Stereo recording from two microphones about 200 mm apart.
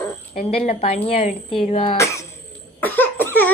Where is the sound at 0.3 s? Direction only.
30° left (ahead or behind).